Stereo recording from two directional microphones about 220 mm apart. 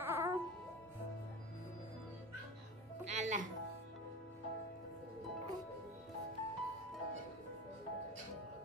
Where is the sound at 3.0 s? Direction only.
35° right (ahead or behind).